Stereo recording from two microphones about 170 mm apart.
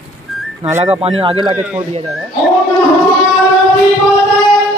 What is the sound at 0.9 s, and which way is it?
Speech, 30° right (ahead or behind).